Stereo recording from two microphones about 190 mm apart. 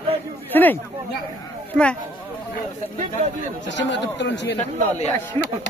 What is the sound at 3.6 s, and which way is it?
Speech, 70° left (ahead or behind).